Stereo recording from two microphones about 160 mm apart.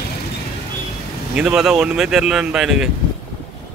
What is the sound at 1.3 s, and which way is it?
Speech, 5° right (ahead or behind).